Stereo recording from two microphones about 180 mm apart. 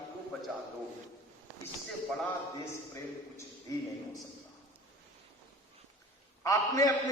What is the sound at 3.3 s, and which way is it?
Speech, 20° left (ahead or behind).